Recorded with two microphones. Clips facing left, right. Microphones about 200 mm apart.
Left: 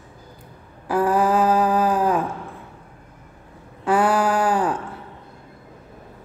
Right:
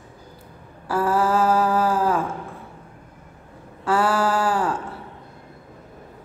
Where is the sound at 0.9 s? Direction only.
15° left (ahead or behind).